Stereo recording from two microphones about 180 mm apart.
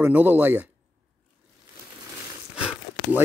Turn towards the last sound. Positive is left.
turn(degrees=-5)  # may be behind; listen again after turning